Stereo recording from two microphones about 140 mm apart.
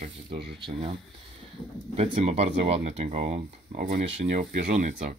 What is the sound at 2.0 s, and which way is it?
Speech, 50° right (ahead or behind).